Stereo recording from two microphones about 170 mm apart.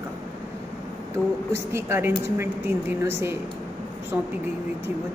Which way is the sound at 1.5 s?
15° right (ahead or behind).